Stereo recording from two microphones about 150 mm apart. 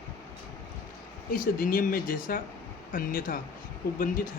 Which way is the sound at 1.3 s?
75° left (ahead or behind).